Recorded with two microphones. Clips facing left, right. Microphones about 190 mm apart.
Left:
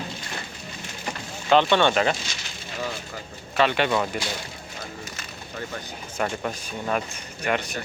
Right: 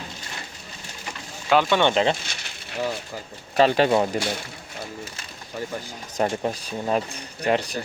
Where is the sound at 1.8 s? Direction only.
25° right (ahead or behind).